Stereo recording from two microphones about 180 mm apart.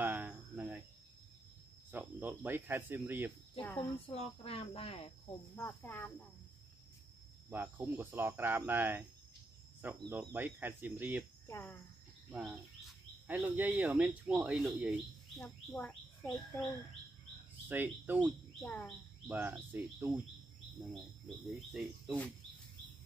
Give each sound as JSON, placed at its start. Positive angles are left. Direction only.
{"t": 0.0, "sound": "cricket", "side_deg": -10}
{"t": 1.9, "sound": "cricket", "side_deg": -10}
{"t": 3.6, "sound": "speech", "side_deg": 10}
{"t": 4.1, "sound": "speech", "side_deg": 30}
{"t": 5.6, "sound": "speech", "side_deg": 10}
{"t": 7.4, "sound": "speech", "side_deg": -10}
{"t": 11.4, "sound": "speech", "side_deg": 10}
{"t": 12.3, "sound": "speech", "side_deg": -5}
{"t": 17.6, "sound": "speech", "side_deg": -10}
{"t": 18.6, "sound": "speech", "side_deg": 5}
{"t": 19.2, "sound": "speech", "side_deg": -10}
{"t": 21.7, "sound": "speech", "side_deg": 0}